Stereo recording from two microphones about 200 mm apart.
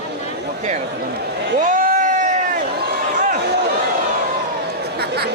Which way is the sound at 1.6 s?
40° right (ahead or behind).